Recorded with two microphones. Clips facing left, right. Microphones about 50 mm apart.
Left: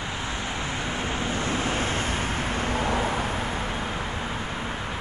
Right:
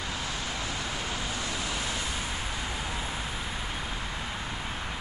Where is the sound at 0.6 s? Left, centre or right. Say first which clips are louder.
Left 4 dB; left.